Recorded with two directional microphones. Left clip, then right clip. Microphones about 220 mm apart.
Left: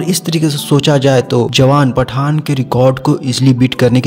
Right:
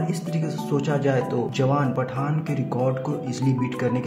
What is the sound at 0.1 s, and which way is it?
Speech, 40° left (ahead or behind).